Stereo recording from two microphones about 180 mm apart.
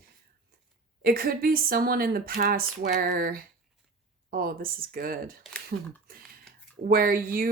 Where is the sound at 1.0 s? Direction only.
55° right (ahead or behind).